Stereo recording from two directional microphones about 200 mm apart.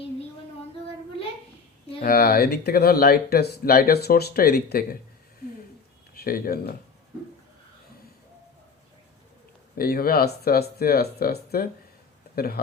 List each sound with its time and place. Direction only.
2.0 s speech: 50° left (ahead or behind)
6.1 s speech: 45° left (ahead or behind)
9.7 s speech: 45° left (ahead or behind)